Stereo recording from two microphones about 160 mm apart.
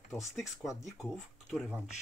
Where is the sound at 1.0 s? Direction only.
Centre (ahead or behind).